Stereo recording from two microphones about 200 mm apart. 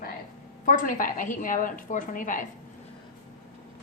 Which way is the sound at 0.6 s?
40° left (ahead or behind).